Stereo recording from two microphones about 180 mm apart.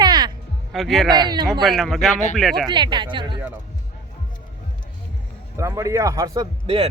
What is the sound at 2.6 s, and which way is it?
Speech, 25° right (ahead or behind).